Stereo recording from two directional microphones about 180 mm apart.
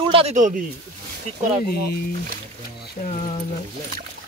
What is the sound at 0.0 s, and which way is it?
Speech, 30° right (ahead or behind).